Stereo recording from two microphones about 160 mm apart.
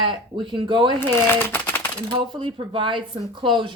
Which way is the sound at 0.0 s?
30° right (ahead or behind).